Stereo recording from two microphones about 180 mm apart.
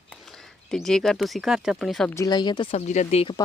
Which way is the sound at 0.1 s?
5° left (ahead or behind).